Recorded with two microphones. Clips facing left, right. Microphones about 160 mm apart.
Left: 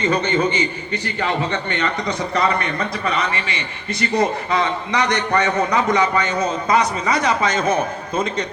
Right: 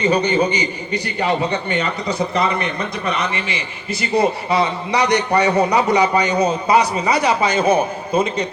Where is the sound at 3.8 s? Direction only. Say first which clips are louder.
Right 2 dB; 5° right (ahead or behind).